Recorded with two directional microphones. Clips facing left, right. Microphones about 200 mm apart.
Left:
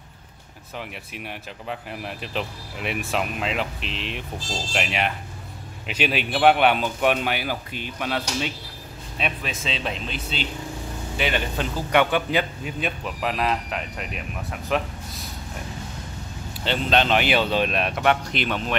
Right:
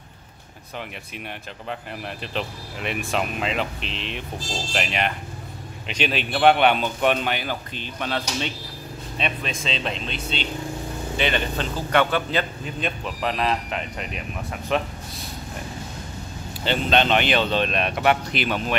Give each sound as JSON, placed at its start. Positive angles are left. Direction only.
{"t": 0.7, "sound": "a man's voice", "side_deg": 5}
{"t": 16.6, "sound": "a man's voice", "side_deg": 0}